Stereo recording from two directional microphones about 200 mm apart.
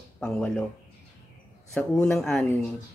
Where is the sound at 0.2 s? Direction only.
5° left (ahead or behind).